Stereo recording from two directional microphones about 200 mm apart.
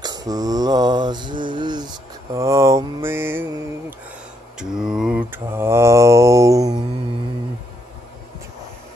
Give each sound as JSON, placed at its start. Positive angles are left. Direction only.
{"t": 0.0, "sound": "mantra", "side_deg": -20}
{"t": 4.6, "sound": "mantra", "side_deg": -5}